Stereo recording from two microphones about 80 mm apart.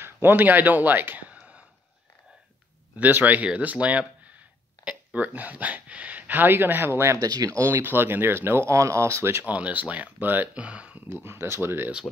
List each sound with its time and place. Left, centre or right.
0.0 s speech: right
1.4 s a sound: centre
3.0 s speech: right
7.2 s speech: right
7.6 s speech: right
9.5 s speech: centre
11.1 s speech: right